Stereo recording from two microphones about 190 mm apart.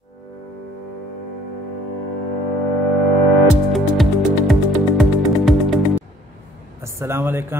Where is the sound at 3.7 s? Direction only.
Centre (ahead or behind).